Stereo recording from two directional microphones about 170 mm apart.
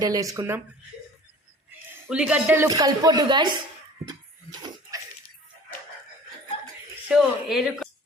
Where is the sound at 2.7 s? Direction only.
20° right (ahead or behind).